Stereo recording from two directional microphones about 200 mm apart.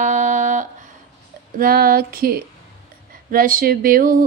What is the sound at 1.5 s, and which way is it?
Speech, 45° right (ahead or behind).